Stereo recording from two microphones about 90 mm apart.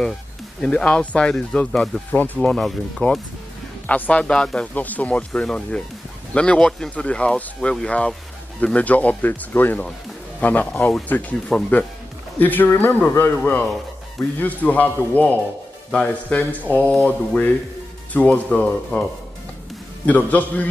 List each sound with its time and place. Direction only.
0.6 s speech: 10° left (ahead or behind)
2.5 s speech: 5° left (ahead or behind)
3.8 s speech: 15° left (ahead or behind)
14.4 s speech: 15° left (ahead or behind)
20.1 s speech: 15° left (ahead or behind)